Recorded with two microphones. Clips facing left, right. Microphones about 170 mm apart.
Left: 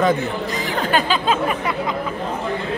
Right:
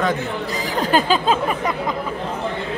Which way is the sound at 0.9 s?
40° right (ahead or behind).